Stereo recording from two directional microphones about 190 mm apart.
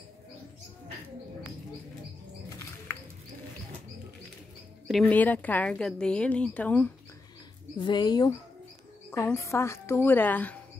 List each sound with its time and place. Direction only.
5.0 s a woman's voice: 10° left (ahead or behind)
7.7 s a woman's voice: 25° left (ahead or behind)